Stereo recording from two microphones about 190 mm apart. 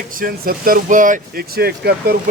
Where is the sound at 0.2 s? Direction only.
50° right (ahead or behind).